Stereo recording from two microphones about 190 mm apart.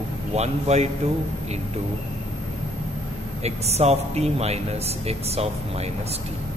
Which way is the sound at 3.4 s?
35° right (ahead or behind).